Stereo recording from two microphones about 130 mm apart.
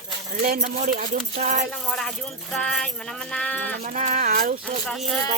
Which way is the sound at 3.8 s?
90° right.